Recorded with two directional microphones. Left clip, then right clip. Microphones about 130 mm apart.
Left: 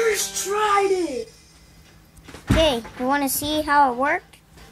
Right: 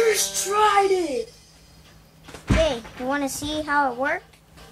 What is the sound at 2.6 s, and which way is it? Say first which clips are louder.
A child's voice: left 6 dB; 30° left (ahead or behind).